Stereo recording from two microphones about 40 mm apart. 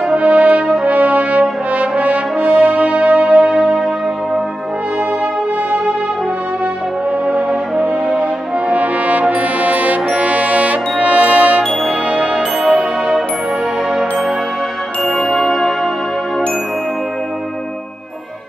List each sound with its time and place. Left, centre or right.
0.1 s brass instrument: right
2.6 s music: right
7.8 s brass instrument: right
12.1 s music: right
15.0 s music: centre